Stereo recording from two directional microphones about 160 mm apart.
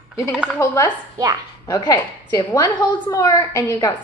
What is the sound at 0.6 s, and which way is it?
A woman's voice, 15° left (ahead or behind).